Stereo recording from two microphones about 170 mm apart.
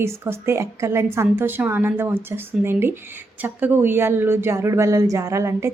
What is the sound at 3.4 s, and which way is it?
Speech, 10° right (ahead or behind).